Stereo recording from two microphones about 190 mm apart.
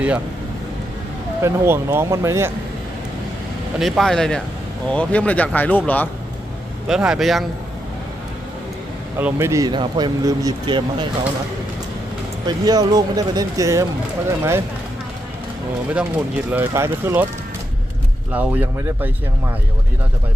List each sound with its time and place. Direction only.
1.4 s speech: 15° right (ahead or behind)
3.8 s speech: centre (ahead or behind)
6.8 s speech: 5° right (ahead or behind)
9.1 s speech: 15° right (ahead or behind)
12.5 s speech: 20° right (ahead or behind)
16.5 s speech: 10° right (ahead or behind)
18.3 s speech: 10° right (ahead or behind)